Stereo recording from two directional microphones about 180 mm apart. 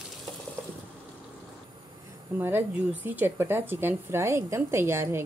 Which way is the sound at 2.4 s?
10° right (ahead or behind).